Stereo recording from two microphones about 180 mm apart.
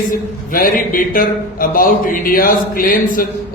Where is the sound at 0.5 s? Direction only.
50° left (ahead or behind).